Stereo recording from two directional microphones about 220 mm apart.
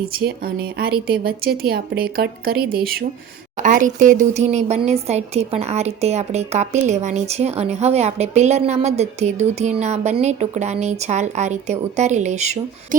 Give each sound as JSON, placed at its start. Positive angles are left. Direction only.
{"t": 0.2, "sound": "speech", "side_deg": -45}